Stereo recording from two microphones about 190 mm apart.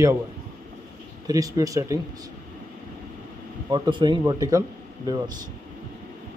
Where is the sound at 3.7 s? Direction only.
25° right (ahead or behind).